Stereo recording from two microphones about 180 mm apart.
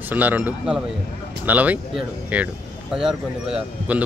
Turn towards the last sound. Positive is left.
turn(degrees=-5)  # may be behind; listen again after turning